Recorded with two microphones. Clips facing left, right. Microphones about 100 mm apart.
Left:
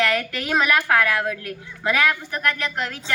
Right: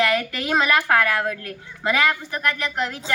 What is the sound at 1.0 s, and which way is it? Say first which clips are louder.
Speech: even; centre (ahead or behind).